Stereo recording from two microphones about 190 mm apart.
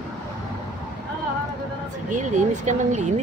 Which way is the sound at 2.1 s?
40° right (ahead or behind).